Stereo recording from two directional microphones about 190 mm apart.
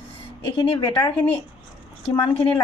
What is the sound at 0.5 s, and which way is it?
Speech, 25° left (ahead or behind).